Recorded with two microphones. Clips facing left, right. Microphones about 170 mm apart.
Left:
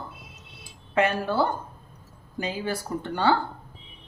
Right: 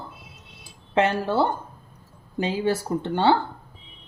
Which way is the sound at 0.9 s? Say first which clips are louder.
Right 2 dB; 25° right (ahead or behind).